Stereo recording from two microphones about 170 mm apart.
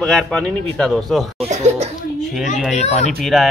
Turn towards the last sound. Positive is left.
turn(degrees=0)  # may be behind; listen again after turning